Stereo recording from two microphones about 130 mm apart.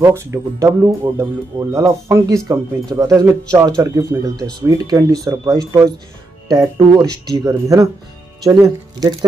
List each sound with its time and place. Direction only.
0.0 s speech: 20° right (ahead or behind)